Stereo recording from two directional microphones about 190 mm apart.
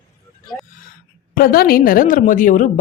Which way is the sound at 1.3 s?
50° left (ahead or behind).